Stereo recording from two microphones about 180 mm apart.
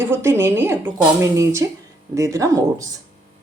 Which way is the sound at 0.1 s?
15° right (ahead or behind).